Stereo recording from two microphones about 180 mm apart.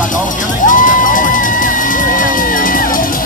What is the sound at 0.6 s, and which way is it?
Music, 45° left (ahead or behind).